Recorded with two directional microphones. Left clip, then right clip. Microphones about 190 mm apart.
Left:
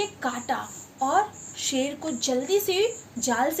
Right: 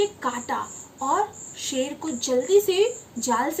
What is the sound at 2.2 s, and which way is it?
A woman's voice, 20° right (ahead or behind).